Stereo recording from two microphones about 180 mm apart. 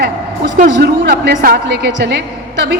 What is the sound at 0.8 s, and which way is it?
A woman's voice, 65° right (ahead or behind).